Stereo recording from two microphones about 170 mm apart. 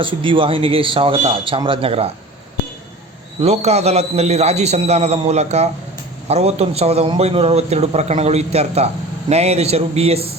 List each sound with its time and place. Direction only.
0.0 s a man's voice: 30° right (ahead or behind)
3.4 s a man's voice: 40° right (ahead or behind)